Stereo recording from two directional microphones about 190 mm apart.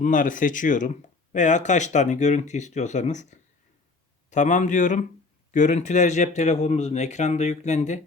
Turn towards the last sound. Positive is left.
turn(degrees=40)  # may be behind; listen again after turning